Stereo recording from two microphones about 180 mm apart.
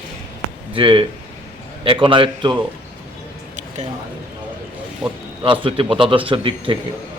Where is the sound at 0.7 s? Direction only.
30° right (ahead or behind).